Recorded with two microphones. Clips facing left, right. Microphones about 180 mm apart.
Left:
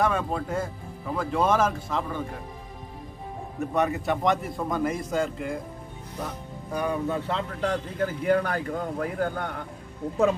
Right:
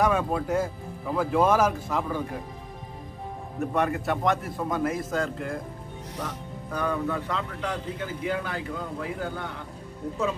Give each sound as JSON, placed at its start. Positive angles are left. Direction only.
{"t": 0.0, "sound": "a man's voice", "side_deg": -5}
{"t": 3.5, "sound": "a man's voice", "side_deg": 0}
{"t": 6.7, "sound": "speech", "side_deg": 15}
{"t": 7.2, "sound": "a man's voice", "side_deg": 30}
{"t": 8.0, "sound": "speech", "side_deg": 50}